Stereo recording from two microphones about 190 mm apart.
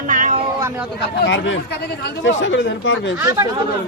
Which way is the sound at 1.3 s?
75° left (ahead or behind).